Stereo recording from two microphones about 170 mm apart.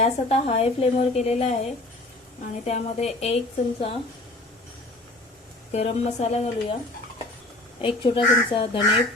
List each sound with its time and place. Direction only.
0.0 s speech: 40° left (ahead or behind)
2.6 s speech: 40° left (ahead or behind)
5.7 s speech: 40° left (ahead or behind)
7.8 s speech: 30° left (ahead or behind)